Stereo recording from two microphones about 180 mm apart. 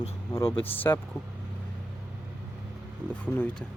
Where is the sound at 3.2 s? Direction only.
10° left (ahead or behind).